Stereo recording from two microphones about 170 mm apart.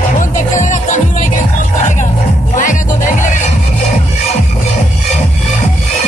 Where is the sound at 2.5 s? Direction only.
50° left (ahead or behind).